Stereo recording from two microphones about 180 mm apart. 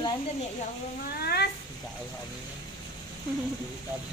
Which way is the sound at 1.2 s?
60° left (ahead or behind).